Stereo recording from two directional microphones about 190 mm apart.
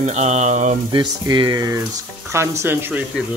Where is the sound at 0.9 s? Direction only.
25° right (ahead or behind).